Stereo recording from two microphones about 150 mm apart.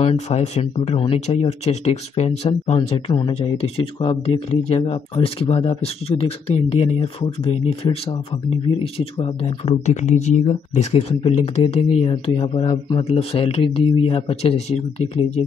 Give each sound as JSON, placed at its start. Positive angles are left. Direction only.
{"t": 0.0, "sound": "speech", "side_deg": 45}
{"t": 3.1, "sound": "speech", "side_deg": 30}
{"t": 3.3, "sound": "speech", "side_deg": 40}